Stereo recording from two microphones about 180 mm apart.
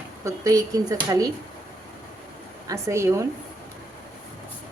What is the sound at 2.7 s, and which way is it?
Speech, 15° right (ahead or behind).